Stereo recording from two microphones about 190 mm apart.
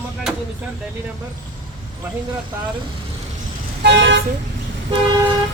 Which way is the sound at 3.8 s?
65° right (ahead or behind).